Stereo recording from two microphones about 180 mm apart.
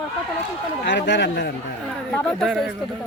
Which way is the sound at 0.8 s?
80° left.